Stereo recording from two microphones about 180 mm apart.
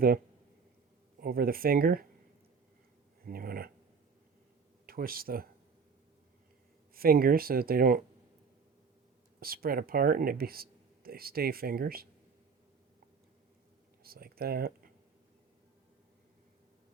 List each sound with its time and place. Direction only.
1.2 s speech: 55° right (ahead or behind)
3.2 s speech: 55° right (ahead or behind)
4.9 s speech: 55° right (ahead or behind)
6.9 s speech: 55° right (ahead or behind)
9.4 s speech: 55° right (ahead or behind)
14.0 s speech: 55° right (ahead or behind)